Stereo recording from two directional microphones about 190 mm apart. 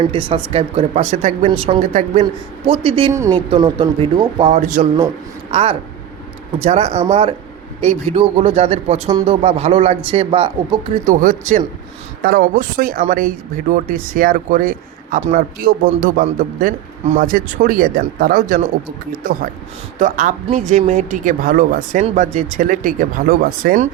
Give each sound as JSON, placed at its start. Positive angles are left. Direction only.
{"t": 0.0, "sound": "a man's voice", "side_deg": -30}
{"t": 3.1, "sound": "speech", "side_deg": -15}
{"t": 3.5, "sound": "speech", "side_deg": -25}
{"t": 4.6, "sound": "a man's voice", "side_deg": -40}
{"t": 4.9, "sound": "a man's voice", "side_deg": -30}
{"t": 11.1, "sound": "speech", "side_deg": -45}